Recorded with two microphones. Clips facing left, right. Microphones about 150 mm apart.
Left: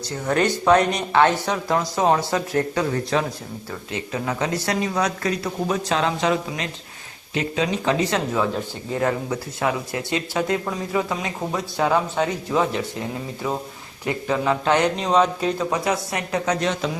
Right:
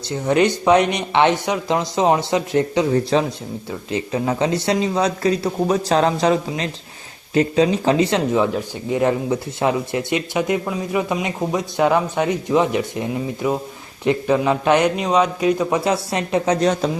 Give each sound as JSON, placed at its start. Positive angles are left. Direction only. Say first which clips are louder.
{"t": 0.3, "sound": "speech", "louder": "right 3 dB", "side_deg": -15}
{"t": 15.8, "sound": "speech", "louder": "right 4 dB", "side_deg": -25}